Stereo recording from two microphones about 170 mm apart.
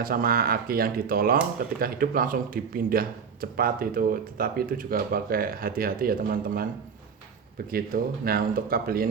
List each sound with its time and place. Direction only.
0.0 s speech: 60° right (ahead or behind)
7.7 s speech: 60° right (ahead or behind)